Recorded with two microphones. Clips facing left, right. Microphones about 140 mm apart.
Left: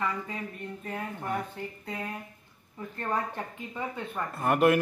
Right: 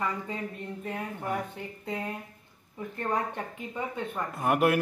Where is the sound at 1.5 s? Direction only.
20° right (ahead or behind).